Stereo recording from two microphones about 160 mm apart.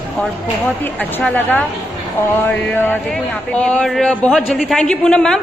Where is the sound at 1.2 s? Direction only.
10° left (ahead or behind).